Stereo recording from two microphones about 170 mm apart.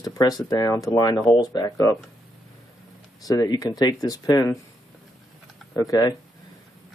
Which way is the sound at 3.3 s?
20° left (ahead or behind).